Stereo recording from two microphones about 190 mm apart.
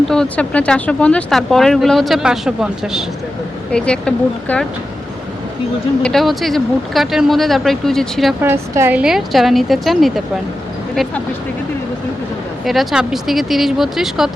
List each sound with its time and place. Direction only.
0.1 s speech: 5° left (ahead or behind)
6.0 s speech: centre (ahead or behind)
8.4 s speech: 15° right (ahead or behind)
12.6 s speech: centre (ahead or behind)